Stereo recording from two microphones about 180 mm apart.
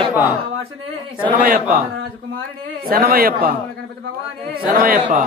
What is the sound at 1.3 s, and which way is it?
Speech, 55° right (ahead or behind).